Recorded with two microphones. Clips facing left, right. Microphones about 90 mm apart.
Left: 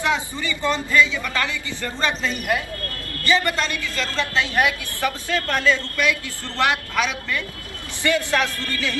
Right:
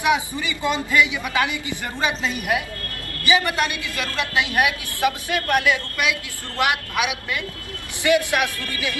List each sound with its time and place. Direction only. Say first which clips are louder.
0.0 s a woman's voice: right 2 dB; 15° right (ahead or behind)